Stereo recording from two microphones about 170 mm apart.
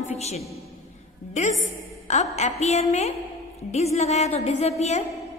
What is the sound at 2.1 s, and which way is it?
A woman's voice, 40° left (ahead or behind).